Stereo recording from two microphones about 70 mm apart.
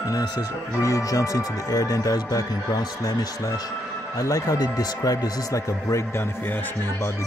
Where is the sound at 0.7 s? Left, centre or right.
Left.